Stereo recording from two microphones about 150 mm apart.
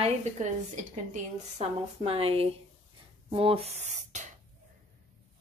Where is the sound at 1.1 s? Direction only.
45° right (ahead or behind).